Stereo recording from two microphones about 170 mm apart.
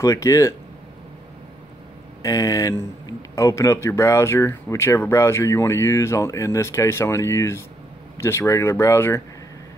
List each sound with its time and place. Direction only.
0.0 s a man's voice: 20° left (ahead or behind)
2.2 s a man's voice: 20° left (ahead or behind)